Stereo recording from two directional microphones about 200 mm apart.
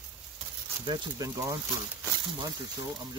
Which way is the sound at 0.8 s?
20° right (ahead or behind).